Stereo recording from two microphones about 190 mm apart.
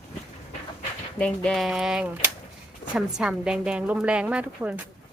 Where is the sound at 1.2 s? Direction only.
Centre (ahead or behind).